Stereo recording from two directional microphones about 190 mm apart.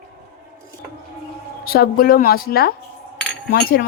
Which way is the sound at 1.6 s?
50° left (ahead or behind).